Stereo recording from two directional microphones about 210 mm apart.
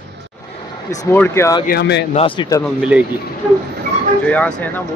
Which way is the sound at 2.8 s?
5° right (ahead or behind).